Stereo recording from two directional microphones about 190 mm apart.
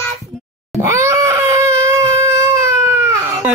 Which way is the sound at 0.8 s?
15° right (ahead or behind).